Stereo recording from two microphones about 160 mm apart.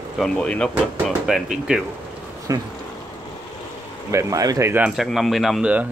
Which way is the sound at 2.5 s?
20° right (ahead or behind).